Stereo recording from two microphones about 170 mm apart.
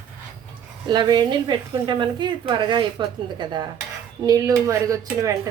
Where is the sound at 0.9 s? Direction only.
25° right (ahead or behind).